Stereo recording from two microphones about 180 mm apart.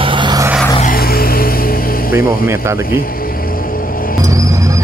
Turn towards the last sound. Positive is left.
turn(degrees=-20)  # may be behind; listen again after turning